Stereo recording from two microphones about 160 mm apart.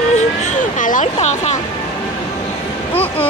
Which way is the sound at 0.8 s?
50° left (ahead or behind).